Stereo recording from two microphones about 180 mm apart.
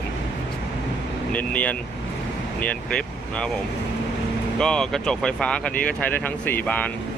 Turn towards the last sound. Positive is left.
turn(degrees=10)  # may be behind; listen again after turning